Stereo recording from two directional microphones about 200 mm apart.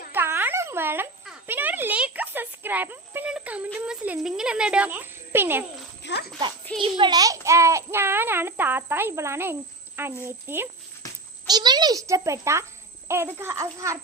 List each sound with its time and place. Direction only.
0.1 s a sound: 10° right (ahead or behind)
6.0 s speech: 60° left (ahead or behind)
6.7 s a child's voice: 25° right (ahead or behind)